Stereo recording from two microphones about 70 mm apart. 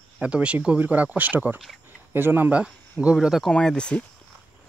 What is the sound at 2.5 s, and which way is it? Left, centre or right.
Speech, centre.